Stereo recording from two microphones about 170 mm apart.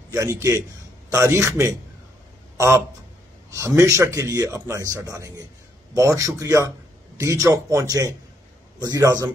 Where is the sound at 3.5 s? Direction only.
15° right (ahead or behind).